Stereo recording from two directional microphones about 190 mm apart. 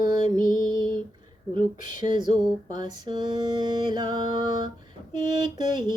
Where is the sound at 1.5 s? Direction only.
25° right (ahead or behind).